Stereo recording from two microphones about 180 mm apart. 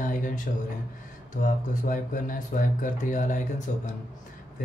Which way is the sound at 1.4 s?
45° left (ahead or behind).